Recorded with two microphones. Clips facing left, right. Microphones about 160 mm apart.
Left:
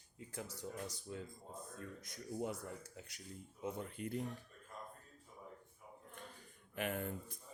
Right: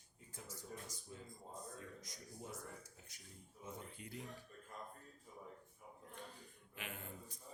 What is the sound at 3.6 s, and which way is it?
Speech, 65° left (ahead or behind).